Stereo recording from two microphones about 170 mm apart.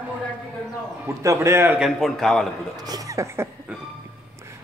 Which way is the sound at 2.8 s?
20° right (ahead or behind).